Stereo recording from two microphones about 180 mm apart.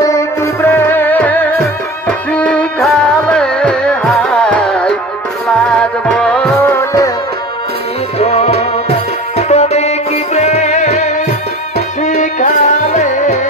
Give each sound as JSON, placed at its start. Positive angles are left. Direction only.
{"t": 0.0, "sound": "music", "side_deg": 15}
{"t": 8.2, "sound": "music", "side_deg": 35}